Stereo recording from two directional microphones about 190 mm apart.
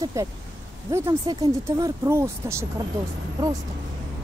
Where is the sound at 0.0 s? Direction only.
15° right (ahead or behind).